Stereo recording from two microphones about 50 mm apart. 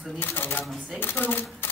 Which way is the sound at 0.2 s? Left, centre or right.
Left.